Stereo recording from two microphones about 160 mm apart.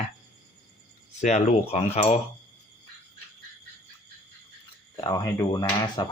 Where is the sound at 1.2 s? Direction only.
45° left (ahead or behind).